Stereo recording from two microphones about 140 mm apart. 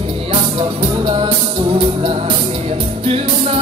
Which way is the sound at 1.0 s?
40° right (ahead or behind).